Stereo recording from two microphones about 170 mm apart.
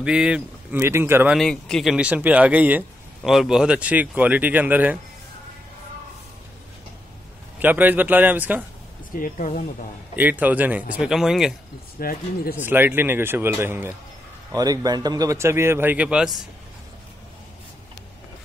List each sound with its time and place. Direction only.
0.0 s a man's voice: 5° right (ahead or behind)
1.3 s a man's voice: centre (ahead or behind)
7.5 s a man's voice: 10° right (ahead or behind)
9.1 s speech: 50° left (ahead or behind)
10.1 s a man's voice: 10° right (ahead or behind)
12.0 s speech: 60° left (ahead or behind)
12.6 s a man's voice: 10° right (ahead or behind)